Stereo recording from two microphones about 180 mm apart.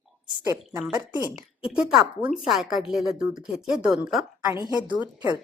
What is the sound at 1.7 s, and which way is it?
A woman's voice, centre (ahead or behind).